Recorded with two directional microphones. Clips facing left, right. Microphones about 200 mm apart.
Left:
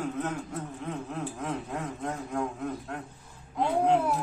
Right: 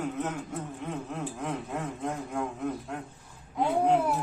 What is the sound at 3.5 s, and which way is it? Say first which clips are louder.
Babbling: even; centre (ahead or behind).